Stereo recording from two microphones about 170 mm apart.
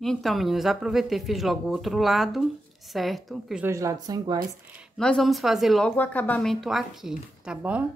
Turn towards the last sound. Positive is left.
turn(degrees=-5)  # may be behind; listen again after turning